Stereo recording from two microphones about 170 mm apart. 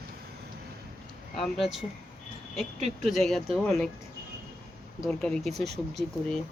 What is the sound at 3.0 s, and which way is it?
Speech, centre (ahead or behind).